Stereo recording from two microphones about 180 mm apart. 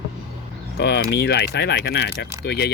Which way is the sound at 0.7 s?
65° left (ahead or behind).